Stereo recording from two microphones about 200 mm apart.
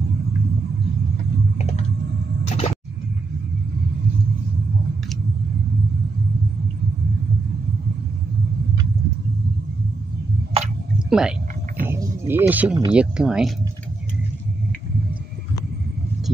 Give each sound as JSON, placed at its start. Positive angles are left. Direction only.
{"t": 2.5, "sound": "music", "side_deg": 30}
{"t": 11.1, "sound": "speech", "side_deg": -5}
{"t": 11.8, "sound": "wild animals", "side_deg": -10}
{"t": 12.9, "sound": "speech", "side_deg": -5}